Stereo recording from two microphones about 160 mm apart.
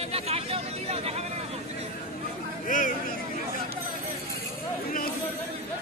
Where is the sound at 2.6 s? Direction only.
55° left (ahead or behind).